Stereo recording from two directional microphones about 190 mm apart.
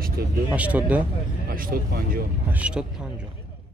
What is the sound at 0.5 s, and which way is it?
Speech, 5° right (ahead or behind).